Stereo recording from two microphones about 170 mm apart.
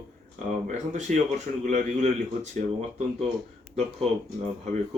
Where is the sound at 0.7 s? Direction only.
45° right (ahead or behind).